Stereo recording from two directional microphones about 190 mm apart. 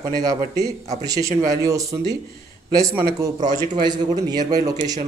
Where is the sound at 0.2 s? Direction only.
20° right (ahead or behind).